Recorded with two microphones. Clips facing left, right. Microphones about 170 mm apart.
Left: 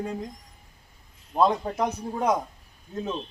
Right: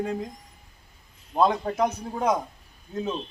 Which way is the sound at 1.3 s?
5° right (ahead or behind).